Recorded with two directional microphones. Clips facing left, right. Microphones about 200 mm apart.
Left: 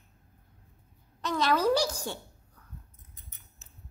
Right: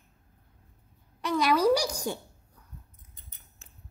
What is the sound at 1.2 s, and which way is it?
Speech, 10° right (ahead or behind).